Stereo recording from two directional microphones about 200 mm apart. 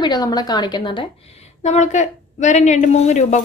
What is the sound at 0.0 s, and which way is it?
A woman's voice, 20° left (ahead or behind).